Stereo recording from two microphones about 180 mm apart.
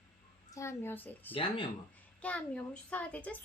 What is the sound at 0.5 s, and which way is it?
Speech, 15° left (ahead or behind).